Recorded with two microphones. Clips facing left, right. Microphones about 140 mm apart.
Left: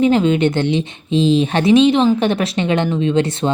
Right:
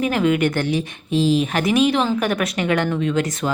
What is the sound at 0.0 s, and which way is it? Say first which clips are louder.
A woman's voice: left 5 dB; 25° left (ahead or behind).